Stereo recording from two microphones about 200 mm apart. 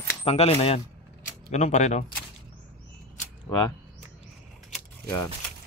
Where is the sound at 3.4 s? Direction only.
15° left (ahead or behind).